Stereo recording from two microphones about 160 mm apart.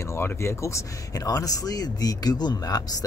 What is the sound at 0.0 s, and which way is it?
Speech, 15° left (ahead or behind).